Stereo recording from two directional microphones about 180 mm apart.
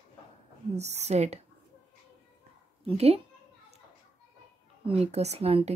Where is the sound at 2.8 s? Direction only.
35° right (ahead or behind).